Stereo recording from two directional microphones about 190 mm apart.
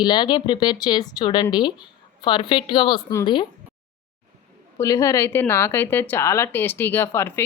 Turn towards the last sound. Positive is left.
turn(degrees=15)  # may be behind; listen again after turning